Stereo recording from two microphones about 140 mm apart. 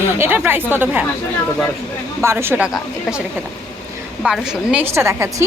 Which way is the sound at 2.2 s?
20° right (ahead or behind).